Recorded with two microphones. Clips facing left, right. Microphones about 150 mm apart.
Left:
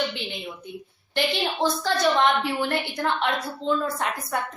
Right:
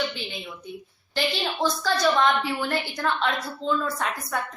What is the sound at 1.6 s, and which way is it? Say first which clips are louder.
A woman's voice: even; 20° left (ahead or behind).